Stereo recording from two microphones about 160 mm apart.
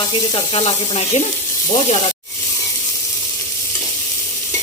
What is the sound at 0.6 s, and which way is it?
Speech, 40° left (ahead or behind).